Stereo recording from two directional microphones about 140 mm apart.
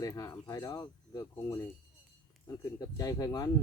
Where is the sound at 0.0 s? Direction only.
20° left (ahead or behind).